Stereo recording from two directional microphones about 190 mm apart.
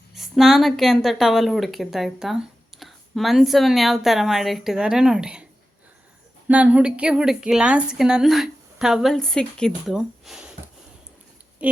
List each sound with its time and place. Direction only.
0.1 s speech: centre (ahead or behind)
6.5 s speech: 5° right (ahead or behind)
11.6 s a sound: 5° right (ahead or behind)